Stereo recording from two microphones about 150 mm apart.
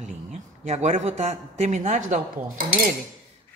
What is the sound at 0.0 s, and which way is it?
A man's voice, 50° right (ahead or behind).